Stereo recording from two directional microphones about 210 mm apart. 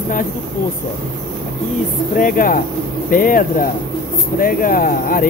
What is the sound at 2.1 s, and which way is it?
Speech, 40° left (ahead or behind).